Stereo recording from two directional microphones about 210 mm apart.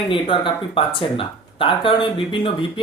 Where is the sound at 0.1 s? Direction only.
25° left (ahead or behind).